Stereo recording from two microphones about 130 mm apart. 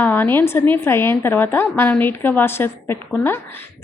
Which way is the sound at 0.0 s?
15° left (ahead or behind).